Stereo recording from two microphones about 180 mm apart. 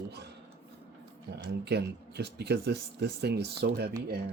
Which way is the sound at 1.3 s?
70° right (ahead or behind).